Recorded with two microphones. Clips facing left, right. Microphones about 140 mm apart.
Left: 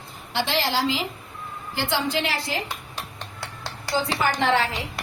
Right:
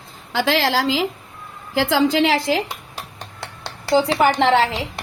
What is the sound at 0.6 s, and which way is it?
A woman's voice, 90° right.